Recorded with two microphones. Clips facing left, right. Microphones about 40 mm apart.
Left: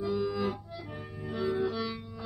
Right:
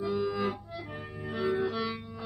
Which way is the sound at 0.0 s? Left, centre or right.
Right.